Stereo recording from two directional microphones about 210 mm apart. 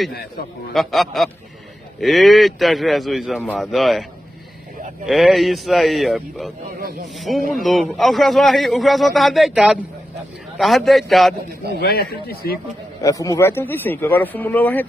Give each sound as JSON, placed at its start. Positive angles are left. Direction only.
{"t": 0.7, "sound": "a man's voice", "side_deg": 0}
{"t": 5.0, "sound": "a man's voice", "side_deg": 0}
{"t": 11.8, "sound": "speech", "side_deg": 50}
{"t": 13.0, "sound": "speech", "side_deg": 15}